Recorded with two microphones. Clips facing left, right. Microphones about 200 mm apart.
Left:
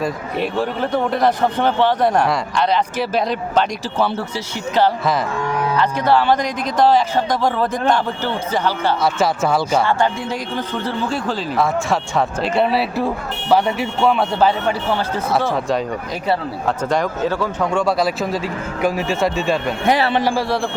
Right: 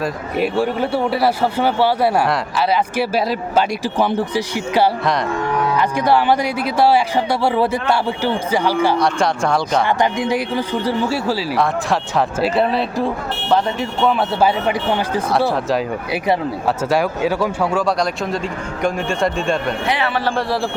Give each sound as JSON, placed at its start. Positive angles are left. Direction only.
{"t": 0.0, "sound": "speech", "side_deg": -10}
{"t": 9.0, "sound": "speech", "side_deg": 5}
{"t": 9.8, "sound": "speech", "side_deg": -15}
{"t": 14.1, "sound": "speech", "side_deg": -5}
{"t": 16.2, "sound": "speech", "side_deg": -10}
{"t": 19.8, "sound": "a man's voice", "side_deg": 45}
{"t": 20.2, "sound": "speech", "side_deg": 5}